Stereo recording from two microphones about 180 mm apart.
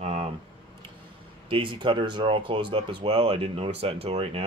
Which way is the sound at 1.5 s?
25° right (ahead or behind).